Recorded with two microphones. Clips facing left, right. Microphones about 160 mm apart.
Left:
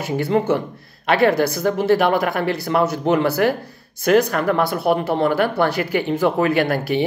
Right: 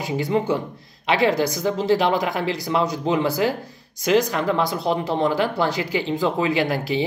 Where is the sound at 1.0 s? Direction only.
55° left (ahead or behind).